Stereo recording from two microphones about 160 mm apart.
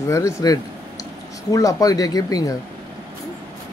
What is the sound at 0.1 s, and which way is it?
Speech, 20° left (ahead or behind).